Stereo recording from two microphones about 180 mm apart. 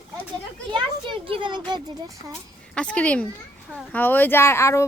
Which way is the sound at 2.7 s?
5° left (ahead or behind).